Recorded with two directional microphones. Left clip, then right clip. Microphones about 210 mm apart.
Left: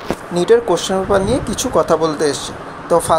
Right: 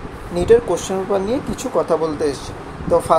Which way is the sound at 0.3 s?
10° left (ahead or behind).